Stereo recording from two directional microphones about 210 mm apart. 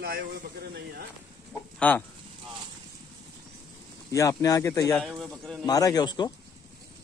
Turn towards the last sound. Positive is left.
turn(degrees=20)  # may be behind; listen again after turning